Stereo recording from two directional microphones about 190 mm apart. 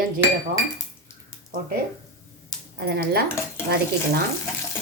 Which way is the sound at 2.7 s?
55° right (ahead or behind).